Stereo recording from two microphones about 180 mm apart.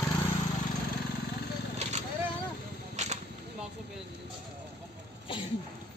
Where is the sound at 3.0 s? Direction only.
40° right (ahead or behind).